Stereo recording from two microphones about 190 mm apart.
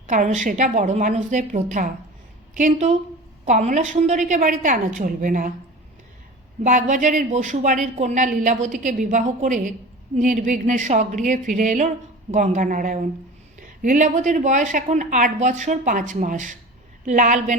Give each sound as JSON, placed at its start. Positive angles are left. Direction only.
{"t": 0.1, "sound": "a woman's voice", "side_deg": -40}
{"t": 6.6, "sound": "speech", "side_deg": -40}